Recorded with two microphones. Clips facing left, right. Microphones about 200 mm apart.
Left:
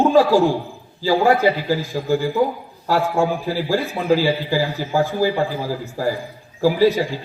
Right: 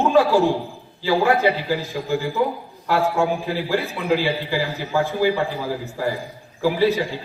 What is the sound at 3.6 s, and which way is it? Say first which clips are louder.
A man's voice: left 4 dB; 40° left (ahead or behind).